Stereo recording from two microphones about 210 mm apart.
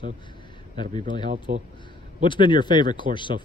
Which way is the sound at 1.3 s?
35° right (ahead or behind).